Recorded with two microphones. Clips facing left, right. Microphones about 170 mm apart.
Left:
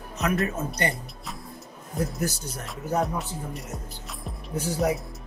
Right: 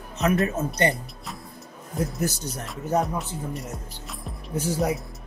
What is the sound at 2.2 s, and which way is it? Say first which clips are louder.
Speech: right 2 dB; 30° left (ahead or behind).